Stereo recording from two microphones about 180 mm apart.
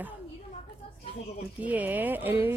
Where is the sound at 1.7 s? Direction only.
10° right (ahead or behind).